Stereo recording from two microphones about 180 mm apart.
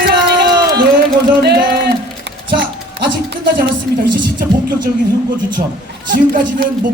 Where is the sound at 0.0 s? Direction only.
60° right (ahead or behind).